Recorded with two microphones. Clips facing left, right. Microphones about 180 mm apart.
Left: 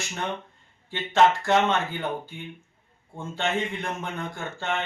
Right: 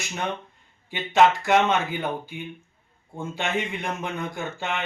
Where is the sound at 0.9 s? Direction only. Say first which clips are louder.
Right 1 dB; 15° right (ahead or behind).